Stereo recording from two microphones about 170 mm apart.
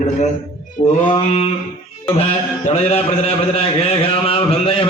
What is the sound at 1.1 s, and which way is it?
A man's voice, 35° left (ahead or behind).